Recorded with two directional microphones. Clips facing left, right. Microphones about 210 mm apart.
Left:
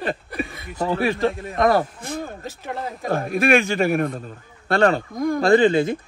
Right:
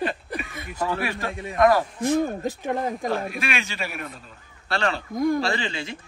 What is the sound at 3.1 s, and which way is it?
A man's voice, 50° left (ahead or behind).